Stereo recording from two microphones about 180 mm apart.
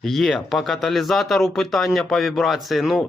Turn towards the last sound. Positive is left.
turn(degrees=0)  # may be behind; listen again after turning